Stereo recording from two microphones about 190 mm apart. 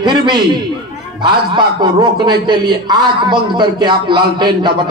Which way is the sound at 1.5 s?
25° right (ahead or behind).